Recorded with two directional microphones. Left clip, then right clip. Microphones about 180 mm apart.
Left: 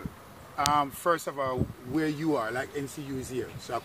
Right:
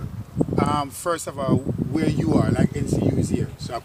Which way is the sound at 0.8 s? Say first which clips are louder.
Right 1 dB; 5° right (ahead or behind).